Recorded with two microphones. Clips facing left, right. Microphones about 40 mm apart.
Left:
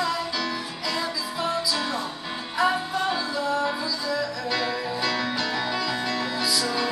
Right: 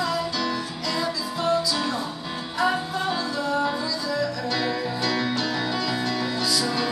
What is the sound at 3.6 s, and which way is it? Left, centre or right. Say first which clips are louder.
Music: right 1 dB; centre.